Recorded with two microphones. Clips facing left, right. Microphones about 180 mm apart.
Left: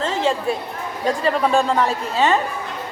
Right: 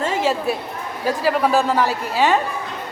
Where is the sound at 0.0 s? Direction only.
10° right (ahead or behind).